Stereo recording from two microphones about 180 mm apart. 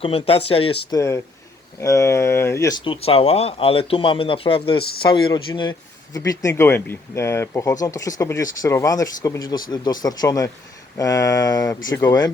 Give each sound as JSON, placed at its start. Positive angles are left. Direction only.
{"t": 0.0, "sound": "speech", "side_deg": 30}
{"t": 0.9, "sound": "speech", "side_deg": 15}